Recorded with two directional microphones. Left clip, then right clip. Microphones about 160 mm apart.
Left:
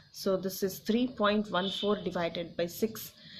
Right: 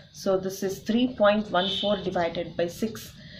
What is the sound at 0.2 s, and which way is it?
Speech, 50° left (ahead or behind).